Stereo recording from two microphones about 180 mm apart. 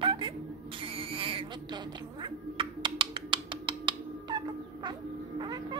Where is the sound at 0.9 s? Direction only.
30° right (ahead or behind).